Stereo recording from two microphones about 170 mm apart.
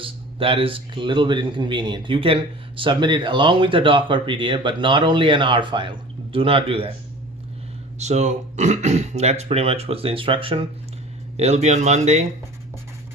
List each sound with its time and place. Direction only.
0.0 s speech: 30° right (ahead or behind)
7.9 s speech: 40° right (ahead or behind)